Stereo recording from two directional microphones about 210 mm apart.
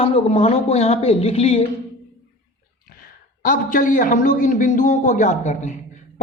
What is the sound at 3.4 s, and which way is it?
A man's voice, 40° left (ahead or behind).